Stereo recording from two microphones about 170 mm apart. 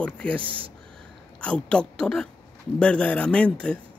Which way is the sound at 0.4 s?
30° right (ahead or behind).